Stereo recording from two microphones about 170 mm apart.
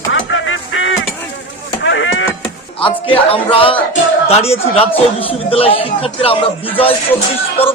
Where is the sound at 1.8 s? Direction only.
90° left.